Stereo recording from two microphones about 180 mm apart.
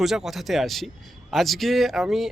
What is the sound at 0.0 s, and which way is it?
Speech, centre (ahead or behind).